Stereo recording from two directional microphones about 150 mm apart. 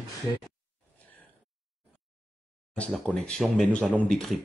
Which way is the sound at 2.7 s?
10° left (ahead or behind).